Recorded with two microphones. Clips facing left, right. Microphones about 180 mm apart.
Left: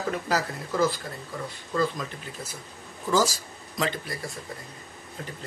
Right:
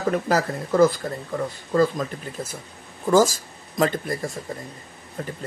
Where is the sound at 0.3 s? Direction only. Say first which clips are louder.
Right 6 dB; 50° right (ahead or behind).